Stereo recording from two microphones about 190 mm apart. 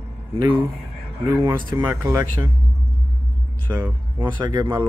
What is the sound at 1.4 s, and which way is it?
Speech, 20° right (ahead or behind).